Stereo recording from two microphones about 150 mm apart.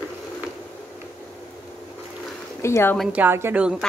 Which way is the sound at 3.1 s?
15° right (ahead or behind).